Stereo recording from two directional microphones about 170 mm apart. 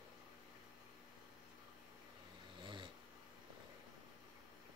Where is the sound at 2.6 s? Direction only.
30° right (ahead or behind).